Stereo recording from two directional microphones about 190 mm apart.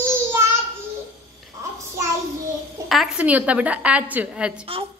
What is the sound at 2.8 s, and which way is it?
A woman's voice, centre (ahead or behind).